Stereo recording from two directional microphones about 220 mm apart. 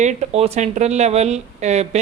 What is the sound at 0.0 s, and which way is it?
Speech, 30° right (ahead or behind).